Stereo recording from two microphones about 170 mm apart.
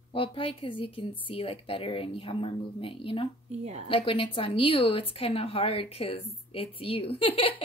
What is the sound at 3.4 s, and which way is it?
Speech, 40° right (ahead or behind).